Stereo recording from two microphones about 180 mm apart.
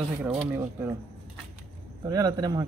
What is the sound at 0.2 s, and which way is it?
Speech, 10° right (ahead or behind).